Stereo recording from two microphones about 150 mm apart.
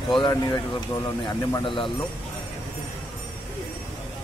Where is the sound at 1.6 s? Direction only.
35° left (ahead or behind).